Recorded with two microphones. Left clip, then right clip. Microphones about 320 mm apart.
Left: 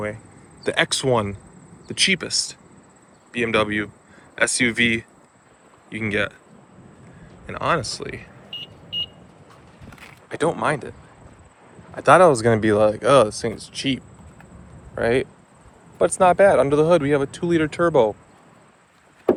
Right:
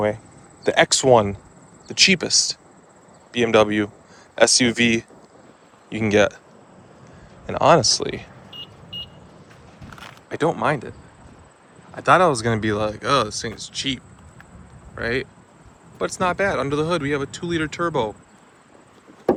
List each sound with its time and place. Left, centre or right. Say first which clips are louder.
0.6 s speech: right 4 dB; centre
7.4 s speech: right 7 dB; centre
10.2 s speech: right 1 dB; centre
11.9 s speech: left 3 dB; centre